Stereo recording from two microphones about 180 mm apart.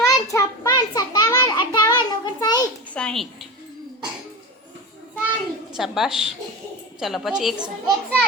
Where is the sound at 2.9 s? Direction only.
5° left (ahead or behind).